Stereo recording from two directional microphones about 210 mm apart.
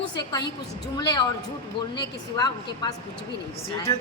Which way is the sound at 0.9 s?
20° left (ahead or behind).